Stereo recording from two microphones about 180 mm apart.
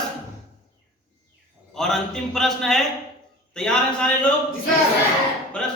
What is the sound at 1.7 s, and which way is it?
A man's voice, 5° left (ahead or behind).